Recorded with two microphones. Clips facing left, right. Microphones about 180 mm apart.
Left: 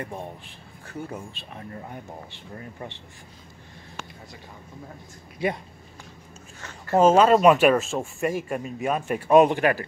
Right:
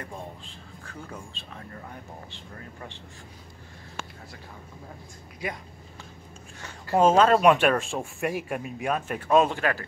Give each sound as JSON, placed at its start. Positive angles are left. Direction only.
{"t": 5.4, "sound": "speech", "side_deg": 25}
{"t": 7.0, "sound": "speech", "side_deg": 5}